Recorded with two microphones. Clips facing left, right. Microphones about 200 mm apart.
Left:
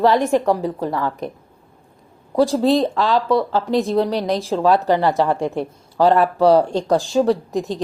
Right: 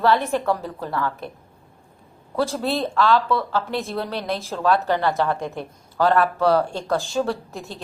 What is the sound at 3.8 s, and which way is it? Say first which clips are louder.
Speech: left 9 dB; 15° left (ahead or behind).